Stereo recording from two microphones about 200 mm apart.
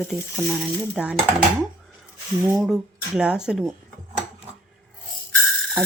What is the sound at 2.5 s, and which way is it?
Speech, centre (ahead or behind).